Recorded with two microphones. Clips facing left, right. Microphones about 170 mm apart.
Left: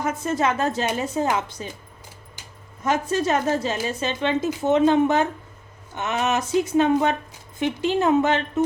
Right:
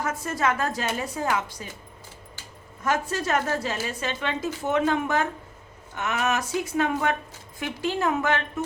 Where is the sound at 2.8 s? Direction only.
20° left (ahead or behind).